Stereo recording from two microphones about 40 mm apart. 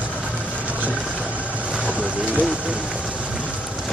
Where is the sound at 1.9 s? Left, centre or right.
Right.